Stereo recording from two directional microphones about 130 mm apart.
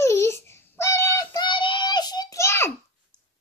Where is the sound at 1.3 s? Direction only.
35° left (ahead or behind); by 2.7 s 20° left (ahead or behind).